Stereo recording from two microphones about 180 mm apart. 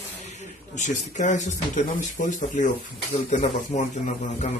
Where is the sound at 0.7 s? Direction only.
40° left (ahead or behind).